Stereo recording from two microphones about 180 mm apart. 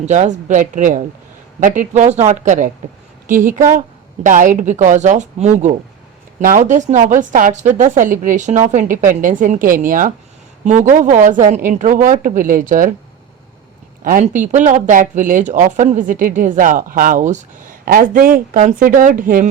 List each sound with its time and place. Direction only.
0.0 s speech: 40° right (ahead or behind)
14.0 s speech: 50° right (ahead or behind)